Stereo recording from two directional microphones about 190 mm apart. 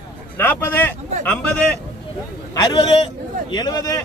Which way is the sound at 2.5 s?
20° left (ahead or behind).